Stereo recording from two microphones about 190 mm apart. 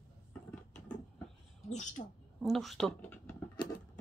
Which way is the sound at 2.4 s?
Centre (ahead or behind).